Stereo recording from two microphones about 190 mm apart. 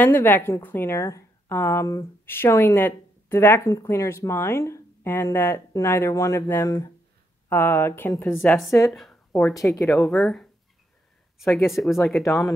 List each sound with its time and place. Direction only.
0.0 s a woman's voice: 10° left (ahead or behind)
9.8 s speech: centre (ahead or behind)